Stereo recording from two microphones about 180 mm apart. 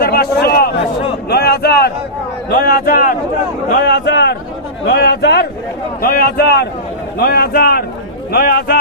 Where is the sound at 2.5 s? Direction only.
55° left (ahead or behind).